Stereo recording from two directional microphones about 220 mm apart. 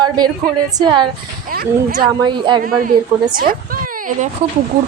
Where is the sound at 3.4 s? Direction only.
40° right (ahead or behind).